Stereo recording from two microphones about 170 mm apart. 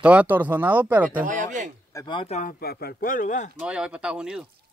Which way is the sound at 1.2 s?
50° right (ahead or behind).